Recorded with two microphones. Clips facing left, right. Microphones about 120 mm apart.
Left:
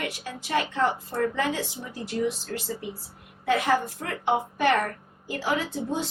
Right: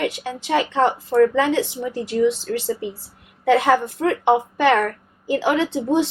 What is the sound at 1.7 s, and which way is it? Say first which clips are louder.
Speech: right 9 dB; 75° right (ahead or behind).